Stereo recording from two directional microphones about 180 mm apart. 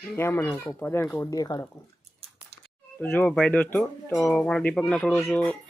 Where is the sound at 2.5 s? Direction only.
65° right (ahead or behind).